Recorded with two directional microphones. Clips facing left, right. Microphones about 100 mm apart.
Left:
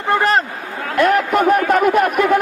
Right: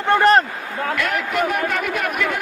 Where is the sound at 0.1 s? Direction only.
5° left (ahead or behind).